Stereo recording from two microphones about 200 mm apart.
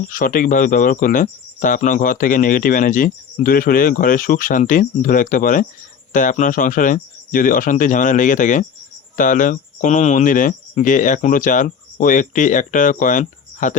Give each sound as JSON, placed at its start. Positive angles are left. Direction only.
{"t": 0.1, "sound": "speech", "side_deg": 40}